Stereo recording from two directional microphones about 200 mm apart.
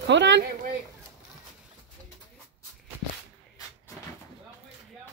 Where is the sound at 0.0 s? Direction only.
60° right (ahead or behind).